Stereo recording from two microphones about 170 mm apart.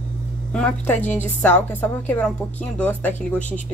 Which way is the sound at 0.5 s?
5° left (ahead or behind).